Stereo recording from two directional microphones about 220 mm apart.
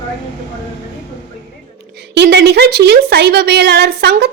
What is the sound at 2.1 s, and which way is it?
A woman's voice, 50° right (ahead or behind).